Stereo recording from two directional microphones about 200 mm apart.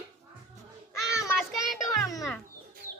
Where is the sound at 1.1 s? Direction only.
15° left (ahead or behind).